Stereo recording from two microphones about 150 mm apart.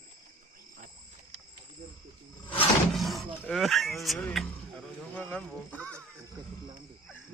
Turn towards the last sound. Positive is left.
turn(degrees=10)  # may be behind; listen again after turning